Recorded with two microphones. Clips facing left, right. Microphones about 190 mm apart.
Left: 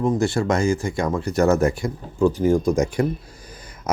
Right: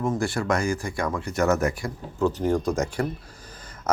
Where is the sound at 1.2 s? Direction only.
35° left (ahead or behind).